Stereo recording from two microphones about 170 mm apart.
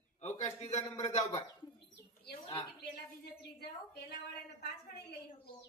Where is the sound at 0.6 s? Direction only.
40° left (ahead or behind).